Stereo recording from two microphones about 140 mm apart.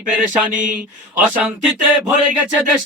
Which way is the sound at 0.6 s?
65° right (ahead or behind).